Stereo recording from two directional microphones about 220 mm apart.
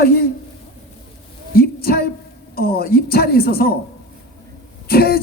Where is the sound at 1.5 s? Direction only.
45° left (ahead or behind).